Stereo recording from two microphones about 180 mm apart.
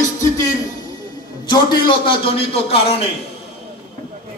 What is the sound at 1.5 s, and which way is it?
A man's voice, 25° left (ahead or behind).